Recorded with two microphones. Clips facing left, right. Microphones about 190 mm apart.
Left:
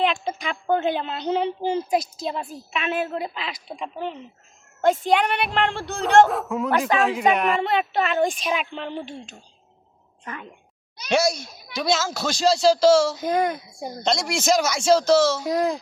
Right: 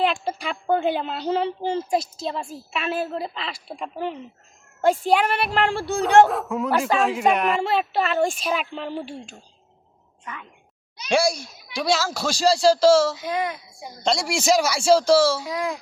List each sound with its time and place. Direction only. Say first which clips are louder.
0.0 s speech: even; 5° right (ahead or behind)
11.1 s speech: even; 10° right (ahead or behind)
13.1 s a woman's voice: left 4 dB; 45° left (ahead or behind)
14.0 s speech: right 1 dB; 5° right (ahead or behind)
15.4 s a child's voice: left 5 dB; 40° left (ahead or behind)